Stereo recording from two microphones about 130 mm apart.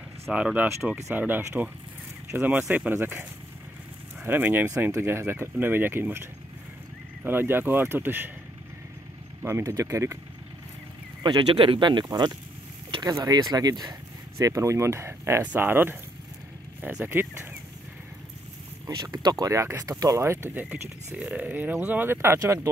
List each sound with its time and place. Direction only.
0.3 s speech: 10° right (ahead or behind)
7.2 s speech: 15° right (ahead or behind)
9.4 s speech: 20° right (ahead or behind)
11.2 s speech: 40° right (ahead or behind); by 17.6 s 15° right (ahead or behind)
18.9 s speech: 30° right (ahead or behind)
20.5 s speech: 15° right (ahead or behind)